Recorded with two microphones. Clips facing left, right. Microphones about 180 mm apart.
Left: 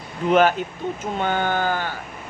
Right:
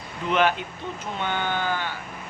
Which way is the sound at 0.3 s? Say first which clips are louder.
Left 5 dB; 45° left (ahead or behind).